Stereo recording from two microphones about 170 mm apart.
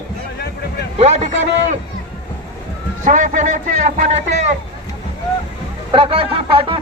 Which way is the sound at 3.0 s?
50° right (ahead or behind).